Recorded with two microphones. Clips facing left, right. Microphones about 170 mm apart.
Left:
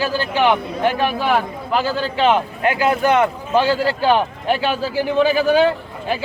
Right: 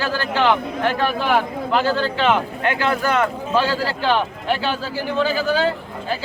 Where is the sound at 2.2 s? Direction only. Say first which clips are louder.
Left 2 dB; 25° left (ahead or behind).